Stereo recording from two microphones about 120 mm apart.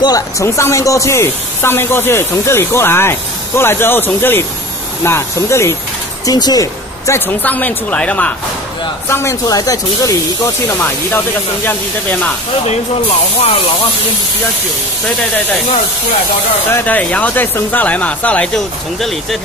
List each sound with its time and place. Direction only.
0.0 s speech: 30° left (ahead or behind)
6.2 s speech: 35° left (ahead or behind)
7.2 s speech: 15° left (ahead or behind)
9.1 s speech: 25° left (ahead or behind)
16.7 s speech: 15° left (ahead or behind)